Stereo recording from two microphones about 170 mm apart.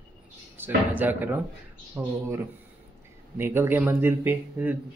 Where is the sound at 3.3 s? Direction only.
15° right (ahead or behind).